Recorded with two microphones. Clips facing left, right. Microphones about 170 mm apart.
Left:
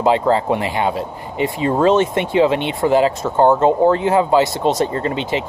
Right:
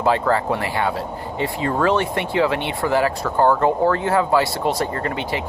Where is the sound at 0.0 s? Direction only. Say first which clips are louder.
Left 3 dB; 20° left (ahead or behind).